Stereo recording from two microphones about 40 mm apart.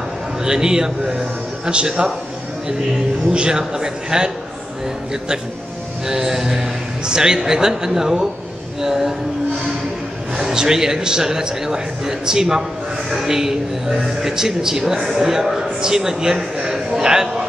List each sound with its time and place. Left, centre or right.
0.5 s a man's voice: centre
3.3 s a man's voice: right
6.0 s a man's voice: centre
10.3 s a man's voice: centre